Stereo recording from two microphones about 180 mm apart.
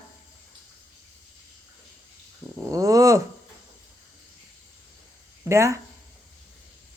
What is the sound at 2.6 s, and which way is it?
Speech, 15° right (ahead or behind).